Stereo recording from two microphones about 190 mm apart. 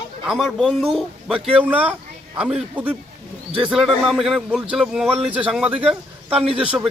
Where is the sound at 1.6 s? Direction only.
10° right (ahead or behind).